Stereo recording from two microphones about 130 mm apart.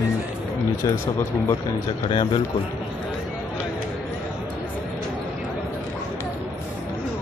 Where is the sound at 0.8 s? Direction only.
30° left (ahead or behind).